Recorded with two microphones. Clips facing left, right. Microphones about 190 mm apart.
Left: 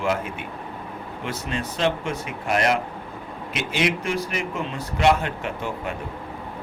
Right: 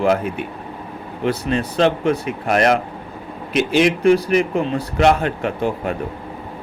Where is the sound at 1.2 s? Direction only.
35° right (ahead or behind).